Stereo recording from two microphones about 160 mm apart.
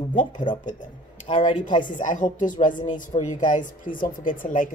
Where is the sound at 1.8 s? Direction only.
55° left (ahead or behind).